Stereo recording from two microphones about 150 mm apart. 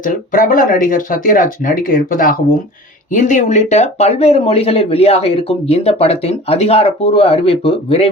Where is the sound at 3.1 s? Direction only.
55° left (ahead or behind).